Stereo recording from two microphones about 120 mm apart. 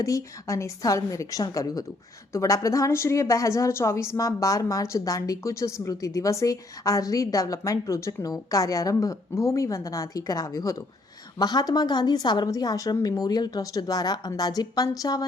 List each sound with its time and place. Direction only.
0.0 s a woman's voice: 25° left (ahead or behind)